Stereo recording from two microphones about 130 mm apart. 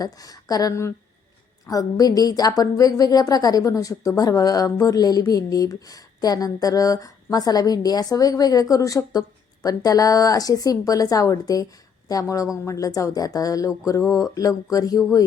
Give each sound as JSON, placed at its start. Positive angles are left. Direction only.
{"t": 0.0, "sound": "a woman's voice", "side_deg": 30}